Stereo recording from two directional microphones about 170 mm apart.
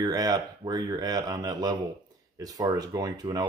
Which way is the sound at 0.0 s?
20° right (ahead or behind).